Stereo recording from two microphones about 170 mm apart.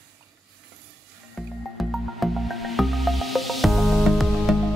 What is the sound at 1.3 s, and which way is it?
Music, centre (ahead or behind).